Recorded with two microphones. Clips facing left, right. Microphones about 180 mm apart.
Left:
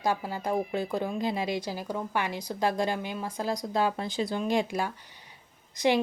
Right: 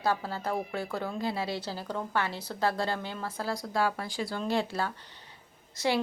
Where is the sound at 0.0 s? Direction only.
15° left (ahead or behind).